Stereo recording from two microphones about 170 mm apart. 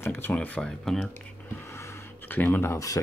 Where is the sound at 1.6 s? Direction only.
15° left (ahead or behind).